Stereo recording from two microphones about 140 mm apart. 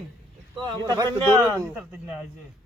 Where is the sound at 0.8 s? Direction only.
25° right (ahead or behind).